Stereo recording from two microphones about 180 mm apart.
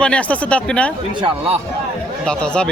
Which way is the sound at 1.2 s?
30° right (ahead or behind).